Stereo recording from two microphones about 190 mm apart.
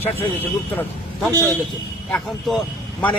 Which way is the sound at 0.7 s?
10° left (ahead or behind).